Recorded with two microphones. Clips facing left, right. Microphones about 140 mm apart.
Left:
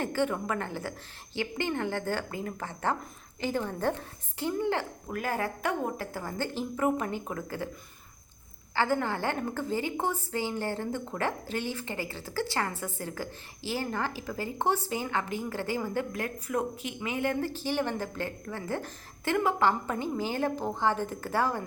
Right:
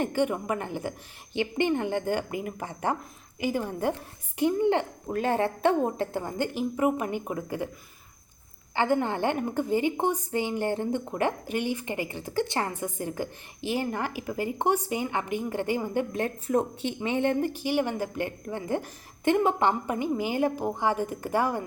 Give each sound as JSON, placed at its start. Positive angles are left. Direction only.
{"t": 0.0, "sound": "a woman's voice", "side_deg": -15}
{"t": 8.7, "sound": "a woman's voice", "side_deg": -20}
{"t": 17.5, "sound": "a woman's voice", "side_deg": -15}